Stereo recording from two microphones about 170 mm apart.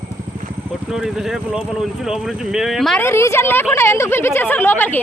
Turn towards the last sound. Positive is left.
turn(degrees=10)  # may be behind; listen again after turning